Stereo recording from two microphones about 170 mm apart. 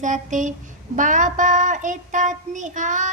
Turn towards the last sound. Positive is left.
turn(degrees=-45)  # may be behind; listen again after turning